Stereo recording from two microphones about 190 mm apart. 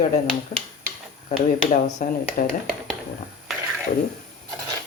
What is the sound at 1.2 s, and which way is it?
Speech, 40° left (ahead or behind).